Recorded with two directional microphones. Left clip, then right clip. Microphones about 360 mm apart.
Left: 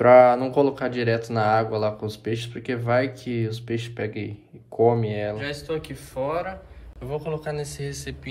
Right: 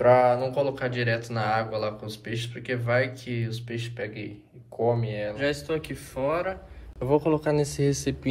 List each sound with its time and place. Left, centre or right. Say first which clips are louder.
0.0 s speech: left 5 dB; left
5.4 s a man's voice: right 2 dB; centre
7.1 s speech: right 6 dB; centre